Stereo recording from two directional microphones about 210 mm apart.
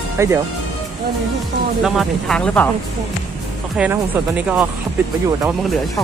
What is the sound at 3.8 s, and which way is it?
Speech, 5° right (ahead or behind).